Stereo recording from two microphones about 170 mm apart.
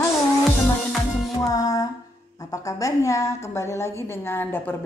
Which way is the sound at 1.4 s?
20° left (ahead or behind).